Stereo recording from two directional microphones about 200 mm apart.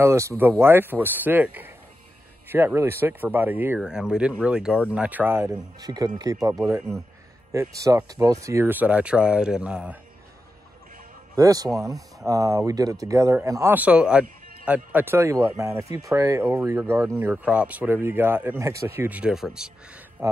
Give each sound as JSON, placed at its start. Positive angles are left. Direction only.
{"t": 0.0, "sound": "speech", "side_deg": -15}
{"t": 6.5, "sound": "speech", "side_deg": -5}
{"t": 7.8, "sound": "speech", "side_deg": -20}
{"t": 11.3, "sound": "speech", "side_deg": -20}